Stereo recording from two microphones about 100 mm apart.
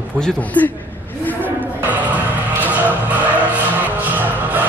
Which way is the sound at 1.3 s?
15° left (ahead or behind).